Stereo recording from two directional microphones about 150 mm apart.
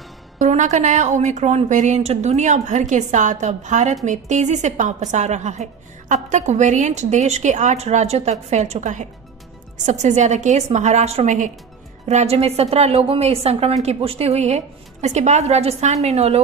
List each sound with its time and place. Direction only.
0.4 s a woman's voice: 55° right (ahead or behind)